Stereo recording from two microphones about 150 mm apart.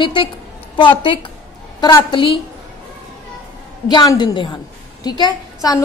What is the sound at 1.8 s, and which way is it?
Speech, 20° left (ahead or behind).